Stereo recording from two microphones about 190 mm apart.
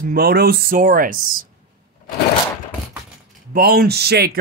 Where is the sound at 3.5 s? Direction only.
50° right (ahead or behind).